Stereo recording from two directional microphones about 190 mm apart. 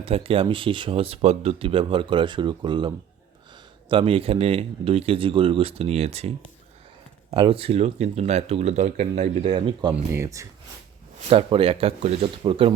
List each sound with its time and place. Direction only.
0.0 s speech: 30° right (ahead or behind)
9.9 s speech: 15° right (ahead or behind)
11.3 s speech: 30° right (ahead or behind)